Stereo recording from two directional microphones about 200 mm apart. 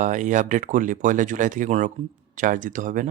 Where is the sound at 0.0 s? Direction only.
40° right (ahead or behind).